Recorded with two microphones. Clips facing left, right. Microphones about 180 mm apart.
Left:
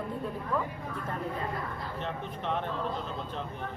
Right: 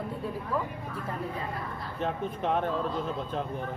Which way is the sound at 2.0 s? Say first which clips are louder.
Right 8 dB; 45° right (ahead or behind).